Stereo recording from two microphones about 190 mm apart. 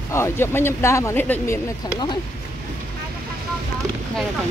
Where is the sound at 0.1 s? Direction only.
15° left (ahead or behind).